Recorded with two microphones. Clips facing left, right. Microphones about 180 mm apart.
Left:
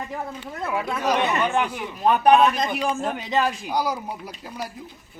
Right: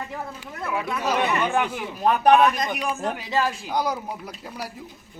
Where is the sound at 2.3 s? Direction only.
25° left (ahead or behind).